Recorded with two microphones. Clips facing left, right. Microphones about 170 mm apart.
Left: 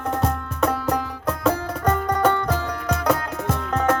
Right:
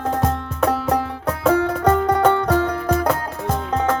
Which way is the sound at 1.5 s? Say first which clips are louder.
Right 7 dB; 75° right (ahead or behind).